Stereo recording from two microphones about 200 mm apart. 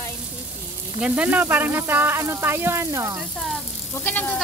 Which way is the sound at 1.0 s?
5° right (ahead or behind).